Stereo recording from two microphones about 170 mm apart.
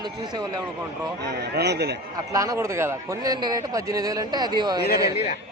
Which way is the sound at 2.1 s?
20° right (ahead or behind).